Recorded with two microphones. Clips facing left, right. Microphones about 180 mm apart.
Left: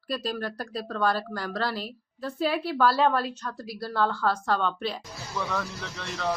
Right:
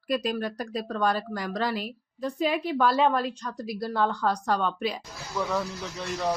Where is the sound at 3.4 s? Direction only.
15° right (ahead or behind).